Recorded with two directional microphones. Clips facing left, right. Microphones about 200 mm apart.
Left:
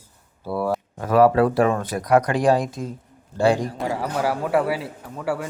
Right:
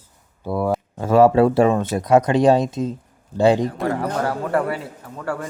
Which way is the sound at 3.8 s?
5° left (ahead or behind).